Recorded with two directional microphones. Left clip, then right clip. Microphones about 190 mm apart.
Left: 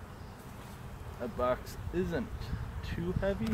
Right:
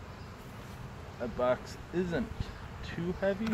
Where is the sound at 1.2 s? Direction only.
Centre (ahead or behind).